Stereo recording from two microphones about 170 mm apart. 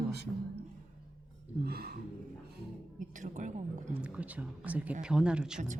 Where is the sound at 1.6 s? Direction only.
70° right (ahead or behind).